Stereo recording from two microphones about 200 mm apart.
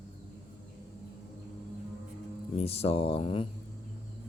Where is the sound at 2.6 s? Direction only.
30° left (ahead or behind).